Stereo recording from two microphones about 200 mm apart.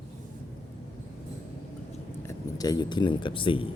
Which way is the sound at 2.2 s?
20° left (ahead or behind).